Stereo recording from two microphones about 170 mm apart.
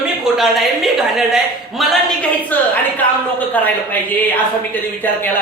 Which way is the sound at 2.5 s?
10° left (ahead or behind).